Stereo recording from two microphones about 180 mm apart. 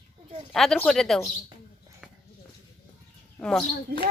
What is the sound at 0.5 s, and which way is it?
Speech, centre (ahead or behind).